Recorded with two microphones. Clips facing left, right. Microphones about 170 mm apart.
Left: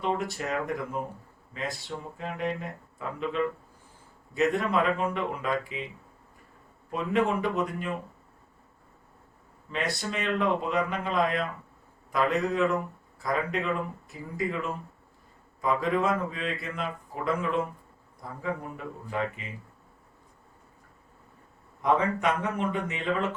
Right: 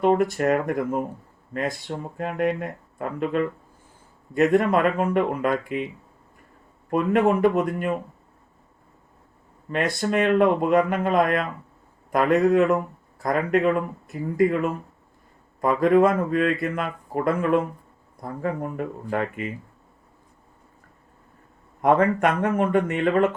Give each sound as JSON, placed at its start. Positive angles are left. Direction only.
{"t": 0.0, "sound": "speech", "side_deg": -55}
{"t": 6.9, "sound": "speech", "side_deg": -55}
{"t": 9.6, "sound": "speech", "side_deg": -50}
{"t": 21.8, "sound": "speech", "side_deg": -55}